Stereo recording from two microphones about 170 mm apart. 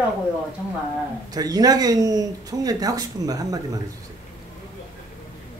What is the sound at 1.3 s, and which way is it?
Speech, 20° right (ahead or behind).